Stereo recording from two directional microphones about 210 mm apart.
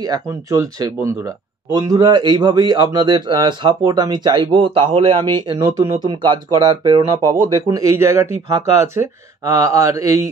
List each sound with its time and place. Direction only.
0.0 s a man's voice: 15° right (ahead or behind)